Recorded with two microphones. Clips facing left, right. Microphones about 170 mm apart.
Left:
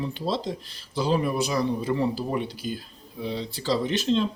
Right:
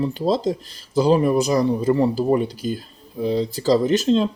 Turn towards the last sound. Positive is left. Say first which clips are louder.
# right 6 dB
turn(degrees=-40)  # may be behind; listen again after turning